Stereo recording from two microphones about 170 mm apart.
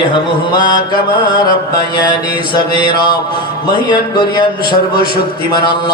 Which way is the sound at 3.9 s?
25° left (ahead or behind).